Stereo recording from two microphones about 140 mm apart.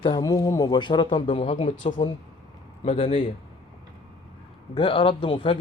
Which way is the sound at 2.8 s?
40° left (ahead or behind).